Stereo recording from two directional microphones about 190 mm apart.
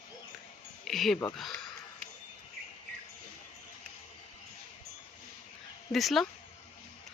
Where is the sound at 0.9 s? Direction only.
Centre (ahead or behind).